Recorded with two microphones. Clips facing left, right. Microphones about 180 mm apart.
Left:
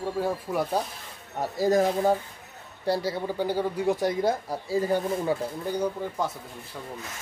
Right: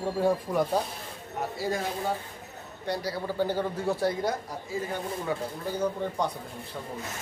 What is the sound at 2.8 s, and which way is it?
Speech, 30° left (ahead or behind).